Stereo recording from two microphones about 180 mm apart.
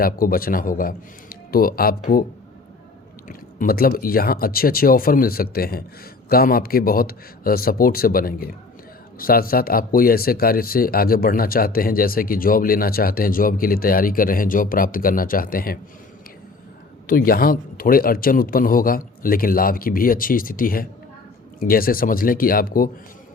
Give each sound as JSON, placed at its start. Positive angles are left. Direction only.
{"t": 0.0, "sound": "speech", "side_deg": 55}
{"t": 3.2, "sound": "speech", "side_deg": 50}
{"t": 17.1, "sound": "speech", "side_deg": 55}